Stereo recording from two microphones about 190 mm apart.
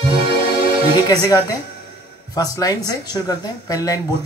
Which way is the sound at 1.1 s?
20° left (ahead or behind).